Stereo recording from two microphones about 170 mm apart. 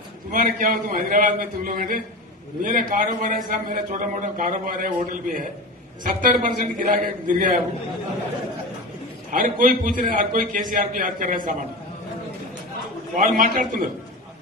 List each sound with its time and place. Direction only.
0.3 s a man's voice: 50° right (ahead or behind)
9.3 s a man's voice: 55° right (ahead or behind)
13.1 s a man's voice: 55° right (ahead or behind)